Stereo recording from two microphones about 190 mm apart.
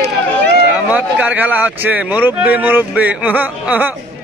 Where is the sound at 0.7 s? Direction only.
5° right (ahead or behind).